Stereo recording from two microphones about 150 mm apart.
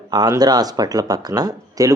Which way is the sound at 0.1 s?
25° right (ahead or behind).